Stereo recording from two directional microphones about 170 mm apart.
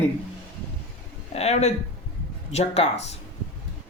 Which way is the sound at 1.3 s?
40° left (ahead or behind).